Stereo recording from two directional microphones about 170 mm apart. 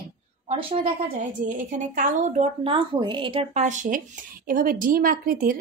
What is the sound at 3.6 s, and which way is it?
A woman's voice, 45° right (ahead or behind).